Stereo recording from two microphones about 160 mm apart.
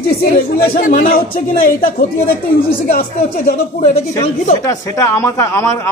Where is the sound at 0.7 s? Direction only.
55° left (ahead or behind).